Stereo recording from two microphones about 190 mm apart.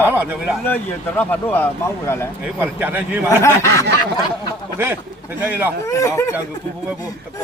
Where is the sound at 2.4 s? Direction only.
10° right (ahead or behind).